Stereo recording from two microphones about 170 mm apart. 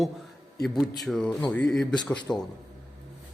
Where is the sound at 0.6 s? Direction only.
Centre (ahead or behind).